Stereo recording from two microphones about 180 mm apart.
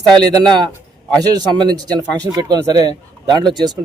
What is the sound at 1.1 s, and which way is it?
Speech, 20° right (ahead or behind).